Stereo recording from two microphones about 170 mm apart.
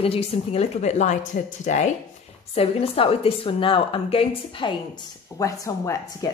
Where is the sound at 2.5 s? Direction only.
35° left (ahead or behind).